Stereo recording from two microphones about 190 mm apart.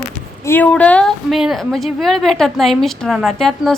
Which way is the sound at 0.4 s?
10° left (ahead or behind).